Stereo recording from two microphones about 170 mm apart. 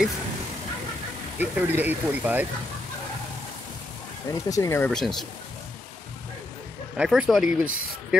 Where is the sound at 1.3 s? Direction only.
10° right (ahead or behind).